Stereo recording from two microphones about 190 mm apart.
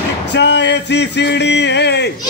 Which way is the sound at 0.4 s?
65° left (ahead or behind).